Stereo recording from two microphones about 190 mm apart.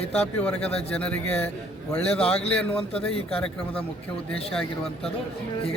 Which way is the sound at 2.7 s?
5° left (ahead or behind).